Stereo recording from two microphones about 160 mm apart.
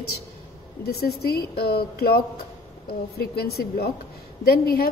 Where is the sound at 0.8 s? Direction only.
80° left.